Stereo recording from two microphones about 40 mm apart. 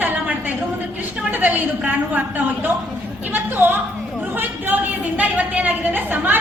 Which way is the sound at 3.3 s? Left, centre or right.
Right.